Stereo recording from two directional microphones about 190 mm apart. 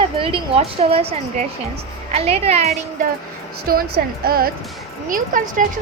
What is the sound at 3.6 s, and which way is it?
Speech, 50° right (ahead or behind).